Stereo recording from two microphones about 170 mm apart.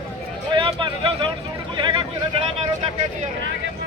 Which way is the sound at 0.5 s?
30° right (ahead or behind).